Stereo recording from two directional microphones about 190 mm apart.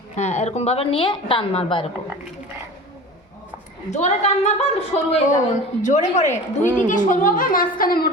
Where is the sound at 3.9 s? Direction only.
35° left (ahead or behind).